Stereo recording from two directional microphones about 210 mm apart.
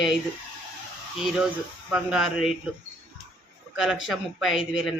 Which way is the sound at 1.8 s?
Centre (ahead or behind).